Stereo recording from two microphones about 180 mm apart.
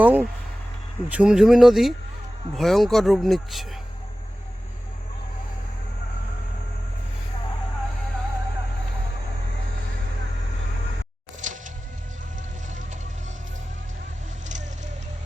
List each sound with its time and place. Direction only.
0.0 s speech: 10° right (ahead or behind)
11.3 s music: 45° right (ahead or behind)